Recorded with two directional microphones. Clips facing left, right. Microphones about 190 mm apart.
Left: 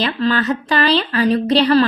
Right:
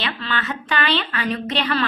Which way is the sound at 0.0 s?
40° left (ahead or behind).